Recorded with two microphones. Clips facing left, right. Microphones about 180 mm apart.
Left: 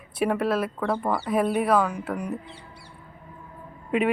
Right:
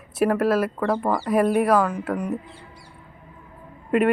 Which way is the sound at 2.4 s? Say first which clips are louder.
Even; 70° left (ahead or behind).